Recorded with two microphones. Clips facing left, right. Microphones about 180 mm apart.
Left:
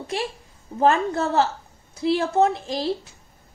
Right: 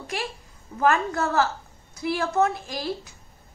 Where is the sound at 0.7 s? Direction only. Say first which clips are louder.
Left 3 dB; 25° left (ahead or behind).